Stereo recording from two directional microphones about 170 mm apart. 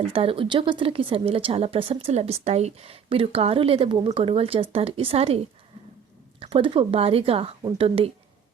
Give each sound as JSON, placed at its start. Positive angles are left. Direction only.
{"t": 0.0, "sound": "speech", "side_deg": -35}
{"t": 6.4, "sound": "speech", "side_deg": -30}